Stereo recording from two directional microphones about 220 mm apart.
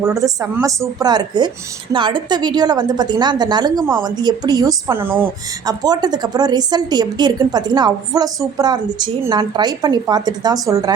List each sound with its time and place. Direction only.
0.0 s a woman's voice: 15° right (ahead or behind)